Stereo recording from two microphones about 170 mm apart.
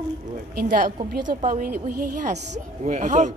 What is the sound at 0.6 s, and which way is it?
A man's voice, 55° right (ahead or behind).